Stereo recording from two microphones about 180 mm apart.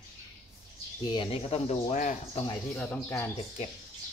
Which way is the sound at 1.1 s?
30° left (ahead or behind).